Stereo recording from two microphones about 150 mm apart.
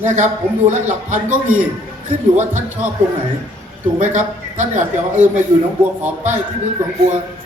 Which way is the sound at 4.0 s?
55° right (ahead or behind).